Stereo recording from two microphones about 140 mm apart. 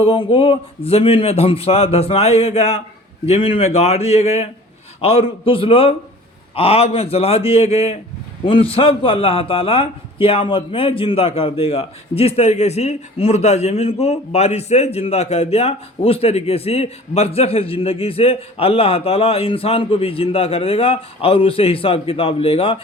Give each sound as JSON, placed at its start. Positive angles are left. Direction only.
{"t": 0.0, "sound": "a man's voice", "side_deg": 40}